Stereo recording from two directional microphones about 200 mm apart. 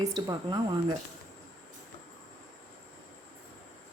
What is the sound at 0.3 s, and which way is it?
Speech, 20° right (ahead or behind).